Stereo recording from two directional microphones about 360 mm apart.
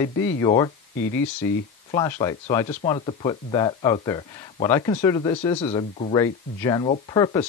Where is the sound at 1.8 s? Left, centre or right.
Centre.